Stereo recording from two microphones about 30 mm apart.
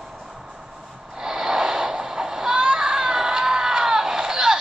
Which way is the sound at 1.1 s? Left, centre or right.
Centre.